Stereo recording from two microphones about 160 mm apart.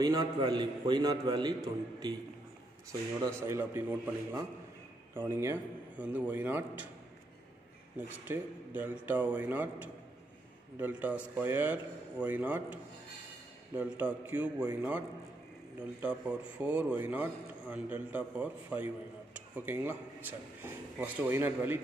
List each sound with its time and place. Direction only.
0.0 s a man's voice: 25° right (ahead or behind)
3.4 s a man's voice: 15° right (ahead or behind)
8.3 s a man's voice: 10° right (ahead or behind)
13.7 s a man's voice: 10° right (ahead or behind)